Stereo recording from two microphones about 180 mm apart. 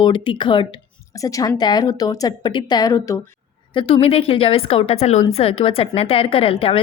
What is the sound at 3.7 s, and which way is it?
A woman's voice, 30° left (ahead or behind).